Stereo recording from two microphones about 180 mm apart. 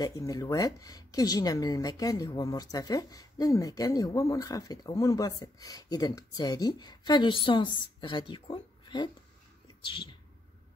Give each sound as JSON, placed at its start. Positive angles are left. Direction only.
{"t": 0.0, "sound": "speech", "side_deg": 20}